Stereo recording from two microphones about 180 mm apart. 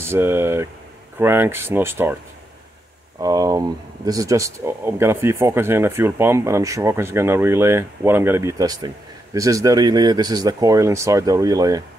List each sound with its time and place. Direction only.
0.0 s speech: 15° right (ahead or behind)
3.2 s speech: 20° right (ahead or behind)